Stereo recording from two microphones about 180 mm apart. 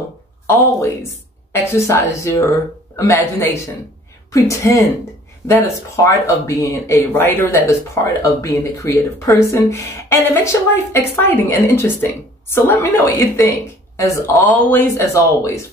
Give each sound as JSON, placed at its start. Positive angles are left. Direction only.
{"t": 0.5, "sound": "speech", "side_deg": 15}
{"t": 6.0, "sound": "speech", "side_deg": 15}